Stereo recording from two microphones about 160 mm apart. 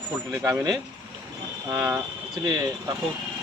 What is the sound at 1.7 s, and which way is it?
Speech, 15° right (ahead or behind).